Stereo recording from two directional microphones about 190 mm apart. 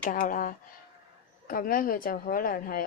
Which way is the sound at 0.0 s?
45° left (ahead or behind).